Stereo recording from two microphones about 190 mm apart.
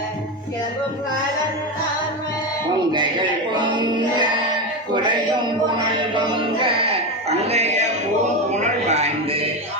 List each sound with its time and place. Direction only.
2.9 s music: 25° right (ahead or behind)
7.3 s speech: 35° right (ahead or behind)
8.5 s a sound: 35° right (ahead or behind)